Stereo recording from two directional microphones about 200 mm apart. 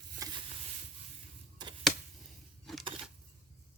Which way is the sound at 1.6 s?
20° right (ahead or behind).